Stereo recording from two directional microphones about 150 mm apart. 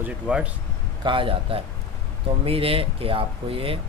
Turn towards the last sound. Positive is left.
turn(degrees=-40)  # may be behind; listen again after turning